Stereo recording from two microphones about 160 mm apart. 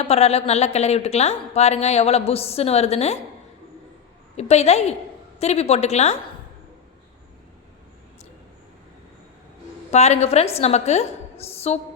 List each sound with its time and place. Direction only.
0.0 s a woman's voice: 40° left (ahead or behind)
4.4 s a woman's voice: 45° left (ahead or behind)
9.9 s a woman's voice: 45° left (ahead or behind)